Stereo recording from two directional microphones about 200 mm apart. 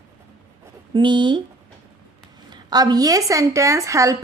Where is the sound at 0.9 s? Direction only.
25° right (ahead or behind).